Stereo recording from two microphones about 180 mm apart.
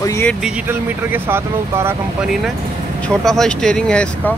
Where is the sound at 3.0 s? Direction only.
5° left (ahead or behind).